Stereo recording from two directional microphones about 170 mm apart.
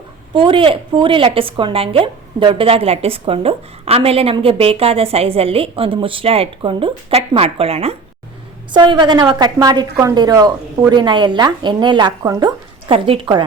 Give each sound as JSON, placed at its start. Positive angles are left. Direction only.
{"t": 0.3, "sound": "a woman's voice", "side_deg": -30}